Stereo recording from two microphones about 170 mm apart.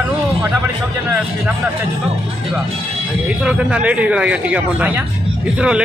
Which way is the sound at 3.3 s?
5° right (ahead or behind).